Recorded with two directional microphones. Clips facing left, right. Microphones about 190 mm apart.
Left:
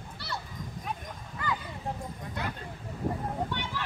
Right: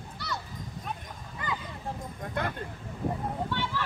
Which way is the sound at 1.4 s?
20° right (ahead or behind).